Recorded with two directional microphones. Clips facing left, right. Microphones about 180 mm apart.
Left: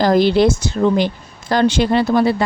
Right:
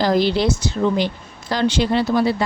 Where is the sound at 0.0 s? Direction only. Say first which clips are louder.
Left 5 dB; 50° left (ahead or behind).